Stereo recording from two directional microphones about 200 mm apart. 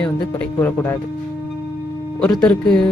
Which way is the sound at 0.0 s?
5° left (ahead or behind).